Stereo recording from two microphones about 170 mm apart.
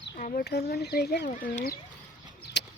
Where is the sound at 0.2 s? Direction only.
50° left (ahead or behind).